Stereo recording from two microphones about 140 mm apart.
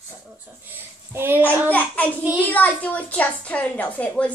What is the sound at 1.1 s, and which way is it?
Speech, 15° right (ahead or behind).